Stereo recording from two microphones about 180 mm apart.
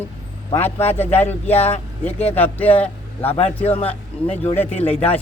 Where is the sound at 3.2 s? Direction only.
35° left (ahead or behind).